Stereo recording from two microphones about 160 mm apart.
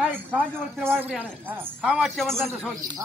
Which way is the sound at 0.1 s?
10° right (ahead or behind).